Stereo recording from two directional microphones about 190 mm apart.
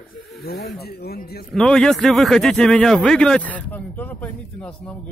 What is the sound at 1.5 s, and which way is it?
Speech, 5° left (ahead or behind).